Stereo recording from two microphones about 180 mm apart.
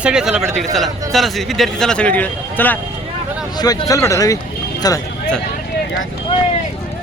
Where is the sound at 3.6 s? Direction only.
20° left (ahead or behind).